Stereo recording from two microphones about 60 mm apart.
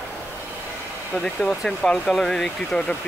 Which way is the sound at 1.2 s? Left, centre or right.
Centre.